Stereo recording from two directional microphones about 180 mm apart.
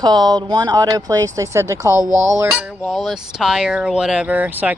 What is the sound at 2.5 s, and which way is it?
Speech, centre (ahead or behind).